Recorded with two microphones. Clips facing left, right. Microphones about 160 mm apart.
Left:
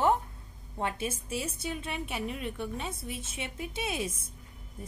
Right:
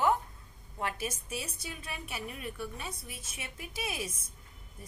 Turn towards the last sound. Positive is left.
turn(degrees=25)  # may be behind; listen again after turning